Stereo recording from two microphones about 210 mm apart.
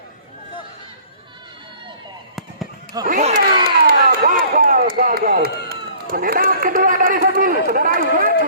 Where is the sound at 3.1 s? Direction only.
35° right (ahead or behind).